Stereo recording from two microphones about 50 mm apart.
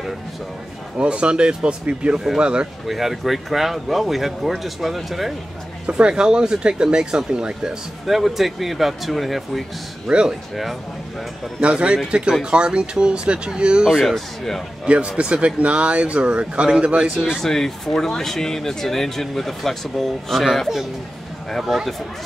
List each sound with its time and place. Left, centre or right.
0.9 s speech: right
2.9 s speech: centre
5.9 s speech: centre
8.1 s speech: centre
11.6 s speech: right
13.9 s speech: centre
14.9 s speech: right
17.4 s speech: centre